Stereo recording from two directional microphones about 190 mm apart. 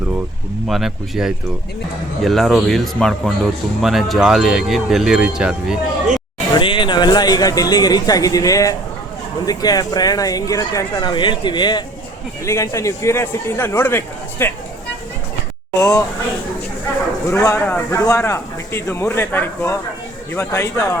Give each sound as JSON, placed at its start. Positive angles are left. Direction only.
{"t": 0.7, "sound": "speech", "side_deg": 0}
{"t": 6.5, "sound": "speech", "side_deg": 25}
{"t": 15.8, "sound": "speech", "side_deg": 15}
{"t": 17.3, "sound": "speech", "side_deg": 15}